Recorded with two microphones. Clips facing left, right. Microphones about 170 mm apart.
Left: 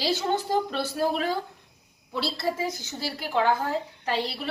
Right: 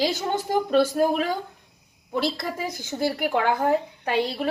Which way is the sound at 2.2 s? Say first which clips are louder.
Right 1 dB; 15° right (ahead or behind).